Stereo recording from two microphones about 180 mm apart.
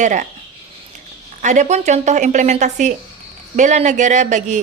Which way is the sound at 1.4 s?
40° right (ahead or behind).